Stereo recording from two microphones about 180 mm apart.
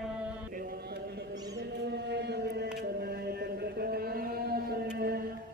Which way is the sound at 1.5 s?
70° right (ahead or behind).